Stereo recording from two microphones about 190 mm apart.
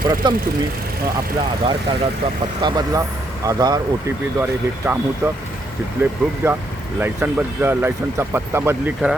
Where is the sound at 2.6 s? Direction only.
20° right (ahead or behind).